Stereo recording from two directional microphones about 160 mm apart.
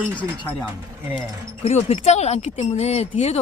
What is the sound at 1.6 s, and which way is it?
Speech, 45° left (ahead or behind).